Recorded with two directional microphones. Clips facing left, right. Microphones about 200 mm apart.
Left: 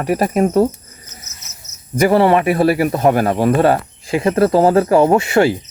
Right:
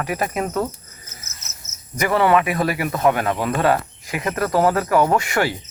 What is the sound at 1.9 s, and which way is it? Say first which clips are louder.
Speech: left 5 dB; 30° left (ahead or behind).